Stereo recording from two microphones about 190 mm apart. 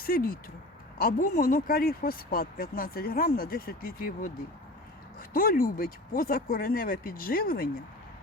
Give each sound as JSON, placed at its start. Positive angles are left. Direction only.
{"t": 0.0, "sound": "speech", "side_deg": 50}
{"t": 5.3, "sound": "speech", "side_deg": 50}